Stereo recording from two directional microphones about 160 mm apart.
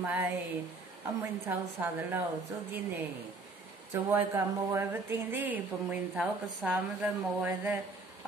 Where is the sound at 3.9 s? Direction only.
15° right (ahead or behind).